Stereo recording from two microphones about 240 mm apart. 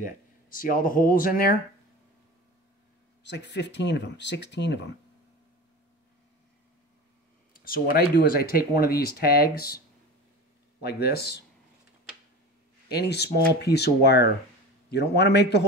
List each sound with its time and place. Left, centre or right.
0.0 s speech: left
3.3 s speech: left
7.6 s speech: left
10.8 s speech: left
12.8 s speech: left